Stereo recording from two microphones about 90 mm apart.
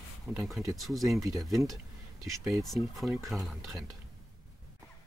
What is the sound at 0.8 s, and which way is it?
Speech, centre (ahead or behind).